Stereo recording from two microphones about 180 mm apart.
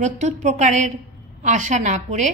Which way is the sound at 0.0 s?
40° right (ahead or behind).